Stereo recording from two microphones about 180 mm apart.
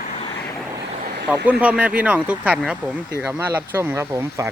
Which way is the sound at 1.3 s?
5° right (ahead or behind).